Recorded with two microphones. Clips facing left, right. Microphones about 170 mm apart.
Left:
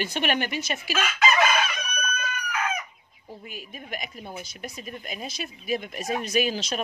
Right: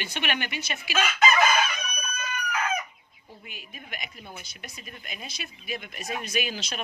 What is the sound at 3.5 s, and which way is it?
Speech, 40° left (ahead or behind).